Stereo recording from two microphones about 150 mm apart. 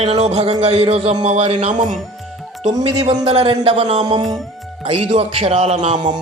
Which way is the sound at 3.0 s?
45° right (ahead or behind).